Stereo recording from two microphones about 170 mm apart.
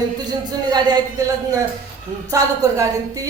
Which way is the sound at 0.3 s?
25° right (ahead or behind).